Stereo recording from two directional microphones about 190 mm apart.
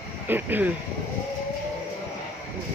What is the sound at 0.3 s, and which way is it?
Speech, 10° right (ahead or behind).